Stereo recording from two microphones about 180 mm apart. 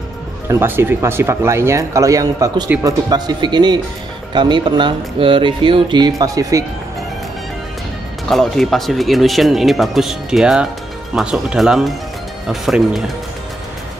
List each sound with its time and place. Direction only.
0.5 s speech: 10° right (ahead or behind)
8.3 s speech: centre (ahead or behind)